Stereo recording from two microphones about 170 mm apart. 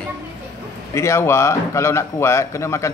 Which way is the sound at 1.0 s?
15° left (ahead or behind).